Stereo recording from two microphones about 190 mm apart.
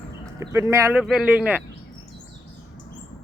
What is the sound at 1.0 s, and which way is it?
Speech, 5° right (ahead or behind).